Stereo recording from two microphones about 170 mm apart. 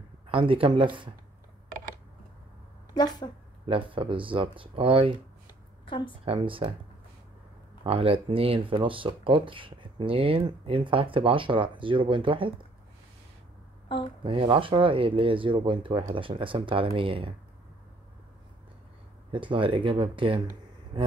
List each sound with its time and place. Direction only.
0.3 s speech: 30° right (ahead or behind)
2.9 s a woman's voice: 25° left (ahead or behind)
3.6 s speech: 30° right (ahead or behind)
5.9 s a woman's voice: 30° left (ahead or behind)
6.2 s speech: 30° right (ahead or behind)
7.8 s speech: 35° right (ahead or behind)
13.8 s speech: 30° left (ahead or behind)
14.2 s speech: 30° right (ahead or behind)
19.3 s speech: 30° right (ahead or behind)